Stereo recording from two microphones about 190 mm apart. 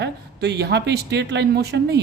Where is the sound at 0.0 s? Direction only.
60° right (ahead or behind).